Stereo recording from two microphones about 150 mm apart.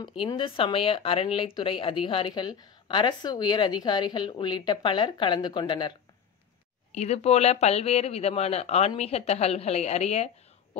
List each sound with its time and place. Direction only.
0.0 s speech: 30° left (ahead or behind)
6.9 s speech: 45° left (ahead or behind)